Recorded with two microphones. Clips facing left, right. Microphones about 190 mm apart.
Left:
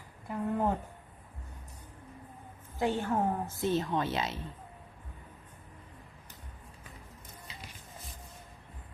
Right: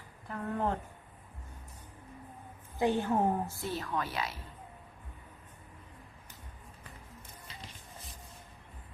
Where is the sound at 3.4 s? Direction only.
20° left (ahead or behind).